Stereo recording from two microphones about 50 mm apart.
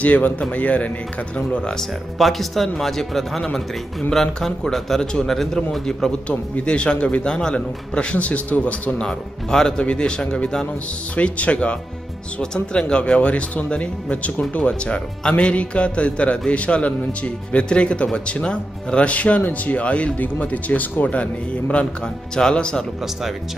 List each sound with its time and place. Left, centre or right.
0.0 s speech: left
1.8 s a man's voice: centre
6.2 s speech: left
9.0 s speech: centre